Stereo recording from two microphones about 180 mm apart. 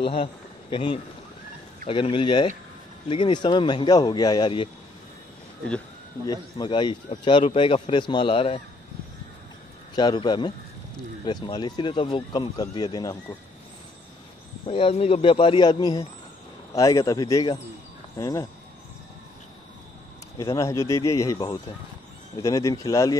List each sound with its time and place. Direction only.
0.0 s a man's voice: 30° left (ahead or behind)
6.6 s speech: 25° left (ahead or behind)
9.9 s speech: 25° left (ahead or behind)
14.7 s speech: 30° left (ahead or behind)
20.3 s speech: 20° left (ahead or behind)